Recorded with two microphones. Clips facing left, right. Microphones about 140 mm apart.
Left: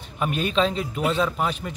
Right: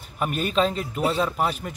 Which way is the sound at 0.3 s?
45° right (ahead or behind).